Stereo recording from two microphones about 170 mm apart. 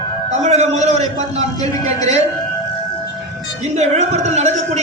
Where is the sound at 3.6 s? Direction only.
40° right (ahead or behind).